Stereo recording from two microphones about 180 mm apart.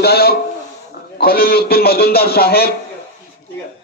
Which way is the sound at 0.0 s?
60° left (ahead or behind).